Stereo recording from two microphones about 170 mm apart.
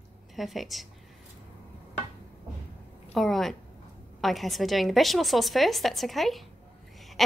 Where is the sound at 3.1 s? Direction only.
Centre (ahead or behind).